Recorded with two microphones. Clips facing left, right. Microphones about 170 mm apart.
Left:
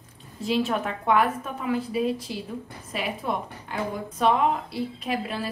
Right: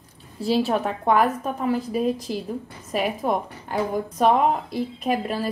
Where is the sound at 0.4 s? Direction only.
35° right (ahead or behind).